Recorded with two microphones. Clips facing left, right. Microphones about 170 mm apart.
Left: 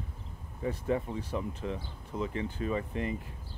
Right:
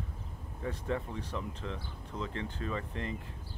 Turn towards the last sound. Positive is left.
turn(degrees=10)  # may be behind; listen again after turning